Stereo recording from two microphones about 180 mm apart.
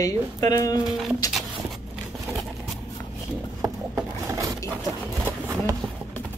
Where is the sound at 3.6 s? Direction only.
15° right (ahead or behind).